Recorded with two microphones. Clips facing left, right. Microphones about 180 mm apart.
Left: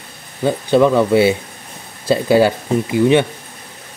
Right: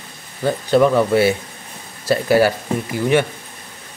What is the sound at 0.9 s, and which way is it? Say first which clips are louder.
Speech: left 2 dB; 20° left (ahead or behind).